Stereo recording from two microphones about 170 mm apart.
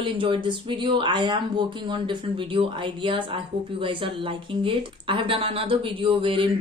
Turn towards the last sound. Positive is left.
turn(degrees=-30)  # may be behind; listen again after turning